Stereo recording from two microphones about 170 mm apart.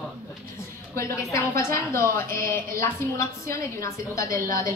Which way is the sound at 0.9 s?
15° left (ahead or behind).